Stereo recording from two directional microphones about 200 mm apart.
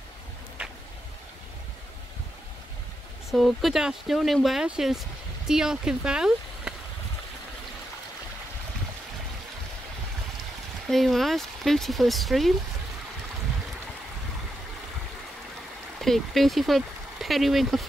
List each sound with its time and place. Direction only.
0.6 s vehicle: 5° right (ahead or behind)
3.3 s speech: centre (ahead or behind)
10.9 s speech: centre (ahead or behind)
16.0 s speech: centre (ahead or behind)